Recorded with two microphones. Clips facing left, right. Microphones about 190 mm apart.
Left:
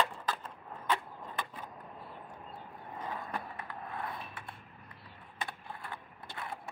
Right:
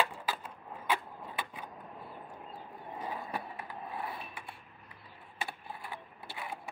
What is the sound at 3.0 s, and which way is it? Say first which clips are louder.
Skateboard: right 1 dB; 10° right (ahead or behind).